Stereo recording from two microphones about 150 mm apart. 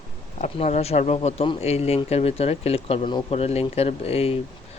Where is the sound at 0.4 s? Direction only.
50° left (ahead or behind).